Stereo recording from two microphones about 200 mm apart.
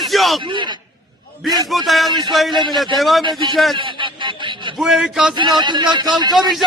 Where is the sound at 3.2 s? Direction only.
20° right (ahead or behind).